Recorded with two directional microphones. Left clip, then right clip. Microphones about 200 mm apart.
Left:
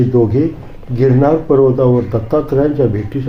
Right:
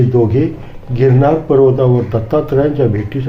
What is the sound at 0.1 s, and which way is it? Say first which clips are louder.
Speech: even; 10° right (ahead or behind).